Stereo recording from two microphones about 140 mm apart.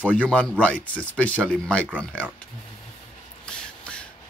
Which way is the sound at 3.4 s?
5° left (ahead or behind).